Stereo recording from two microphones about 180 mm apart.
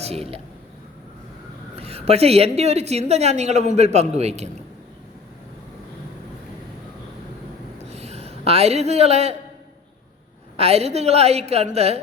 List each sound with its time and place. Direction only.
0.0 s a woman's voice: 35° right (ahead or behind)
1.7 s a woman's voice: 35° right (ahead or behind)
7.8 s a sound: 35° right (ahead or behind)
10.6 s a woman's voice: 35° right (ahead or behind)